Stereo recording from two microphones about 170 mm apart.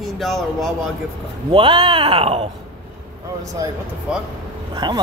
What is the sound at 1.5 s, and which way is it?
Speech, 30° right (ahead or behind).